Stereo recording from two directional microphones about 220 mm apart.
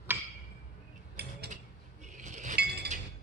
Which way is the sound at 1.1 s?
45° right (ahead or behind).